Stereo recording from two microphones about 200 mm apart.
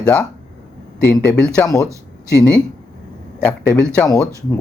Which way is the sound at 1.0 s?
10° left (ahead or behind).